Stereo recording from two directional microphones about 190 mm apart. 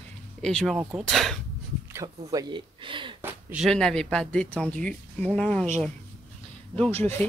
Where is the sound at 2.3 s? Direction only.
20° right (ahead or behind).